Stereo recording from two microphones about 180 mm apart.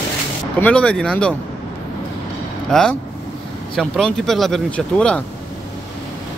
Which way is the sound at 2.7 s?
5° left (ahead or behind).